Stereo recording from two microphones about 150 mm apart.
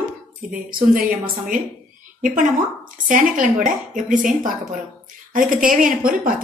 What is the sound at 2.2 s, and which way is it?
Speech, 65° right (ahead or behind).